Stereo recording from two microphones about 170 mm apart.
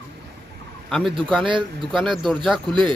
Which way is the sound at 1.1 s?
30° right (ahead or behind).